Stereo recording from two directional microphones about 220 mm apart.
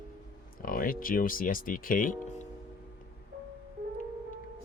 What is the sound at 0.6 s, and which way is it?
Speech, 40° left (ahead or behind).